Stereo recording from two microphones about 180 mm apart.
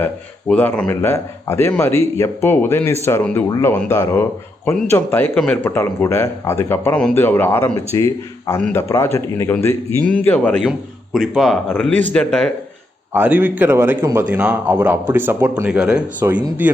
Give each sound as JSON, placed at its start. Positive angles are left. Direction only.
{"t": 0.0, "sound": "speech", "side_deg": 10}
{"t": 10.6, "sound": "speech", "side_deg": 0}
{"t": 13.1, "sound": "speech", "side_deg": -10}